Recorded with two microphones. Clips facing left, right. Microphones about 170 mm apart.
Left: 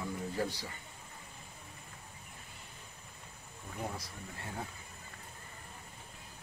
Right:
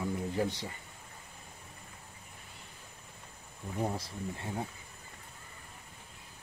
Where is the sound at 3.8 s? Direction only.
30° right (ahead or behind).